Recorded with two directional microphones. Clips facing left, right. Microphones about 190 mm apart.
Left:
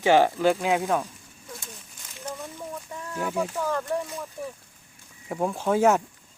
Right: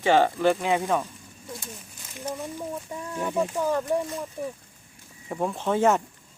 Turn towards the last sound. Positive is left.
turn(degrees=5)  # may be behind; listen again after turning